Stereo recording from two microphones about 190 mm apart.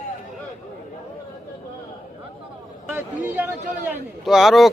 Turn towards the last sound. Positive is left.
turn(degrees=0)  # may be behind; listen again after turning